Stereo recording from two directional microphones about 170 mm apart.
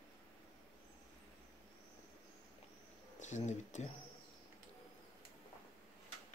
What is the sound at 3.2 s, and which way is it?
Speech, 45° left (ahead or behind).